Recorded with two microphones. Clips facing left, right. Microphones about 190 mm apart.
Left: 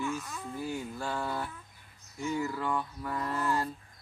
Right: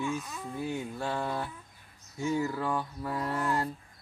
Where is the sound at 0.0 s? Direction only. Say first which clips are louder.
Right 1 dB; 20° right (ahead or behind).